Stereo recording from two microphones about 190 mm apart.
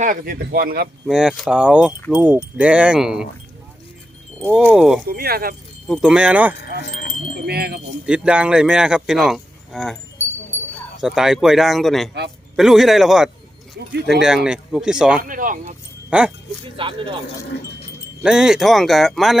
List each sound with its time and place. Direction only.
0.0 s speech: 50° right (ahead or behind)
1.0 s speech: centre (ahead or behind)
4.7 s speech: 5° right (ahead or behind)
5.0 s speech: 50° right (ahead or behind)
5.9 s speech: 5° right (ahead or behind)
7.3 s wind chime: 55° right (ahead or behind)
8.0 s speech: 5° right (ahead or behind)
11.0 s speech: 5° right (ahead or behind)
13.7 s speech: 60° right (ahead or behind)
14.2 s speech: 5° right (ahead or behind)
15.2 s speech: 45° right (ahead or behind)
16.0 s speech: 5° right (ahead or behind)
16.7 s speech: 25° right (ahead or behind)
18.2 s speech: 5° right (ahead or behind)